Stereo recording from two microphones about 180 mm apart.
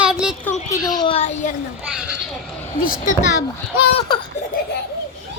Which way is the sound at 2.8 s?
50° left (ahead or behind).